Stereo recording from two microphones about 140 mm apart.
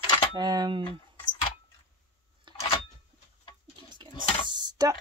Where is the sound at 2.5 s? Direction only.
35° right (ahead or behind).